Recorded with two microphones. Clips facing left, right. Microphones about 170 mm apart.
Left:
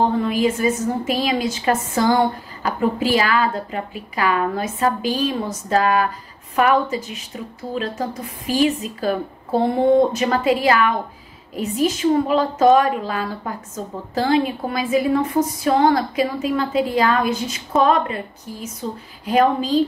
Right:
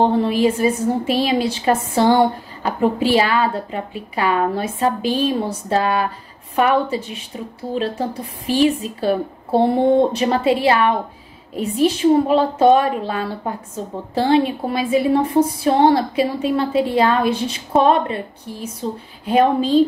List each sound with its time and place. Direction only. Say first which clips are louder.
0.0 s a woman's voice: right 3 dB; 30° right (ahead or behind)